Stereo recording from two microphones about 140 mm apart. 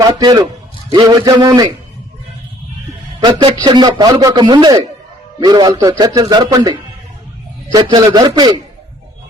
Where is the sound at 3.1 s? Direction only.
40° right (ahead or behind).